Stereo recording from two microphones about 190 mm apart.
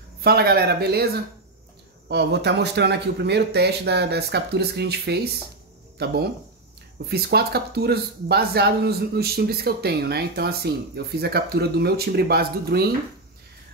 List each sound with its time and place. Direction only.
0.2 s speech: 55° right (ahead or behind)